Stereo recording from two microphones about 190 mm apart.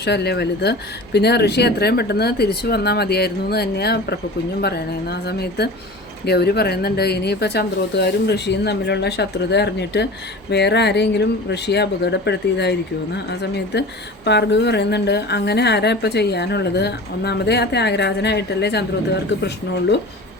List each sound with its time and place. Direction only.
0.0 s a woman's voice: 60° left (ahead or behind)
13.7 s a woman's voice: 60° left (ahead or behind)